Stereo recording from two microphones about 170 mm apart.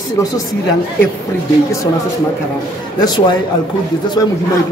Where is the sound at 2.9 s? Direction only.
25° left (ahead or behind).